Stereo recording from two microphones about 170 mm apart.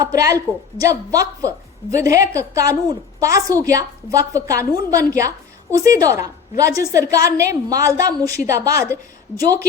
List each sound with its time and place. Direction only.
0.0 s a woman's voice: 20° right (ahead or behind)